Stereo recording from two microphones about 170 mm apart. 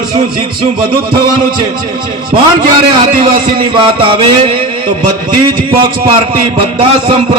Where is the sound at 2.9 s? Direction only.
25° right (ahead or behind).